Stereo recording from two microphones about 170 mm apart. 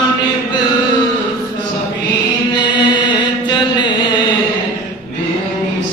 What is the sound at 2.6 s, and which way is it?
Chant, 25° left (ahead or behind).